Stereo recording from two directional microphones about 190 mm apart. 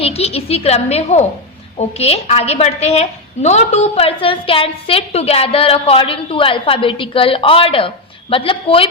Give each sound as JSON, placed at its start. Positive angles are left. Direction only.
{"t": 0.0, "sound": "a woman's voice", "side_deg": 30}